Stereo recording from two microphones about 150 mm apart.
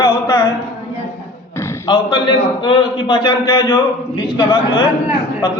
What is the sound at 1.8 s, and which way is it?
A man's voice, 30° left (ahead or behind).